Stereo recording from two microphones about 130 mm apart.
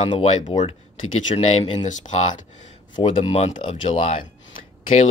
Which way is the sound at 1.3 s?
65° left (ahead or behind).